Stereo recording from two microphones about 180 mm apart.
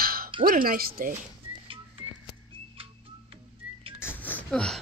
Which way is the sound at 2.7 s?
30° right (ahead or behind).